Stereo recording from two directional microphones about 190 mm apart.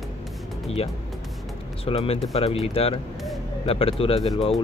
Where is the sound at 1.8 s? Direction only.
30° left (ahead or behind).